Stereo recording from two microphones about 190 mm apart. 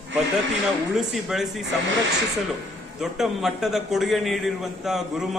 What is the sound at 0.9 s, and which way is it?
Speech, centre (ahead or behind).